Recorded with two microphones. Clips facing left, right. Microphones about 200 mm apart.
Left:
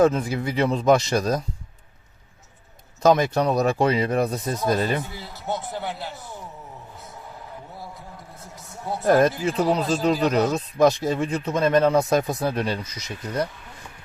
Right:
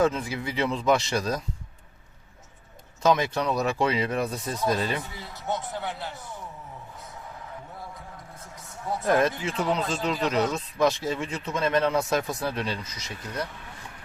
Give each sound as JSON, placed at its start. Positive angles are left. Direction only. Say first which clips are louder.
{"t": 0.0, "sound": "speech", "louder": "left 5 dB", "side_deg": 40}
{"t": 3.0, "sound": "a man's voice", "louder": "left 5 dB", "side_deg": 40}
{"t": 9.0, "sound": "speech", "louder": "left 5 dB", "side_deg": 40}